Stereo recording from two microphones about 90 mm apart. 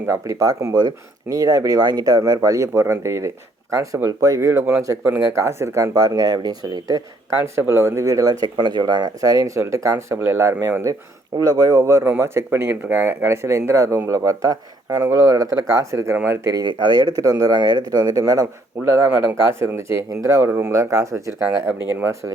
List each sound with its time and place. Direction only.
0.3 s speech: 40° right (ahead or behind)
1.3 s speech: 40° right (ahead or behind)
7.7 s speech: 30° right (ahead or behind)
10.2 s speech: 25° right (ahead or behind)
11.3 s speech: 45° right (ahead or behind)
11.8 s speech: 30° right (ahead or behind)
16.6 s speech: 50° right (ahead or behind)
18.9 s speech: 30° right (ahead or behind)